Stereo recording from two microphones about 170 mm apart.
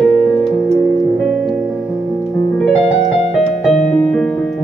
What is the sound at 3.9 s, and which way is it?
Music, 5° left (ahead or behind).